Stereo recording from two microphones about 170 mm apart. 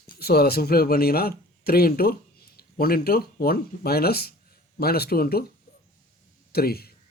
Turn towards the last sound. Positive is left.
turn(degrees=65)  # may be behind; listen again after turning